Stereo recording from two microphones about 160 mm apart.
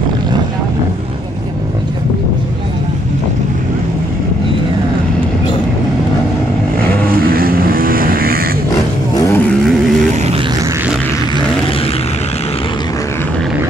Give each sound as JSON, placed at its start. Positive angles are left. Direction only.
{"t": 7.2, "sound": "vehicle", "side_deg": -65}
{"t": 9.1, "sound": "vehicle", "side_deg": 20}
{"t": 10.1, "sound": "a sound", "side_deg": -40}